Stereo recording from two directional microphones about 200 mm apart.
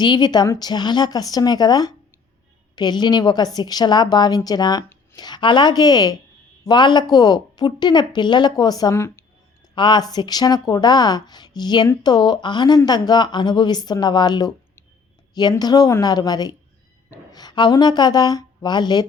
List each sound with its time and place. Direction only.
0.0 s a woman's voice: 20° left (ahead or behind)